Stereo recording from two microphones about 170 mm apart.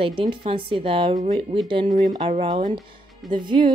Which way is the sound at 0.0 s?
30° right (ahead or behind).